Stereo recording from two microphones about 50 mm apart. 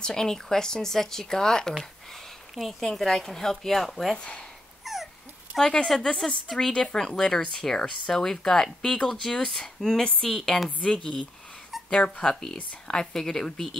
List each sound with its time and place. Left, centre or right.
0.0 s speech: centre
2.5 s a woman's voice: centre
4.2 s speech: left
4.9 s dog: centre
5.6 s speech: centre
6.4 s a woman's voice: centre
10.8 s speech: left